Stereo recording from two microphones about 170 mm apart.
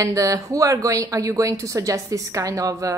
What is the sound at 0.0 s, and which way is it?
A woman's voice, 20° right (ahead or behind).